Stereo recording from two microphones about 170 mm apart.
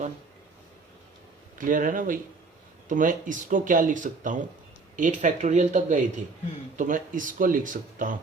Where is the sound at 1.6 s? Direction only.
50° right (ahead or behind).